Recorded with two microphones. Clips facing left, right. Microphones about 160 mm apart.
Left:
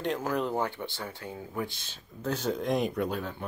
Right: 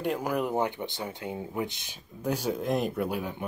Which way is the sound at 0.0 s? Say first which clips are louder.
Right 1 dB; 10° right (ahead or behind).